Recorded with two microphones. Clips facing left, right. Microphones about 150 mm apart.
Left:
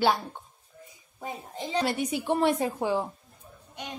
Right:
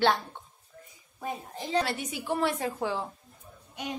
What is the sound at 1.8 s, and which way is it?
A woman's voice, 20° left (ahead or behind).